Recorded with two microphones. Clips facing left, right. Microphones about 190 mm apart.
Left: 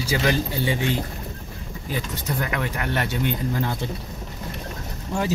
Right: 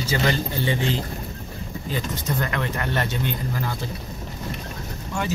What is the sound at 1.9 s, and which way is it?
Speech, 10° left (ahead or behind).